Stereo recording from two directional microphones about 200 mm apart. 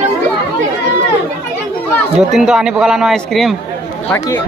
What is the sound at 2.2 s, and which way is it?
A man's voice, centre (ahead or behind).